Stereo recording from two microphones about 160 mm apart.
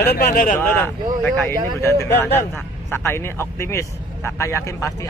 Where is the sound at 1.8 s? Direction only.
15° left (ahead or behind).